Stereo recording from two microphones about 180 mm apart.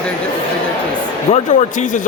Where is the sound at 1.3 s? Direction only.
40° left (ahead or behind).